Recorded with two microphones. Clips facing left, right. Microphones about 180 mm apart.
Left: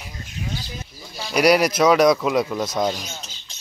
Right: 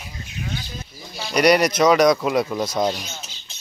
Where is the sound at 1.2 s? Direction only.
5° left (ahead or behind).